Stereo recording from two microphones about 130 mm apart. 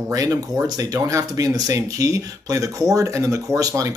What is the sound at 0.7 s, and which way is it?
Speech, 25° right (ahead or behind).